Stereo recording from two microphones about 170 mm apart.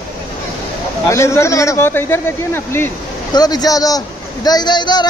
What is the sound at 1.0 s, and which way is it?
A man's voice, 15° left (ahead or behind).